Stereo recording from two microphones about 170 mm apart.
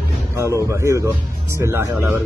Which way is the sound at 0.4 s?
15° right (ahead or behind).